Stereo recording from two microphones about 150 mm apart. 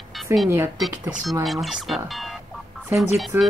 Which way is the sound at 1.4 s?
Centre (ahead or behind).